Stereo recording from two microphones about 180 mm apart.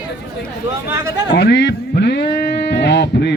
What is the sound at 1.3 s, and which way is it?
Speech, 70° left (ahead or behind).